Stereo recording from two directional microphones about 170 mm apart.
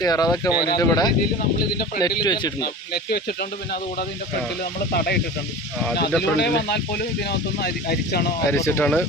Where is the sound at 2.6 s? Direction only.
65° left (ahead or behind).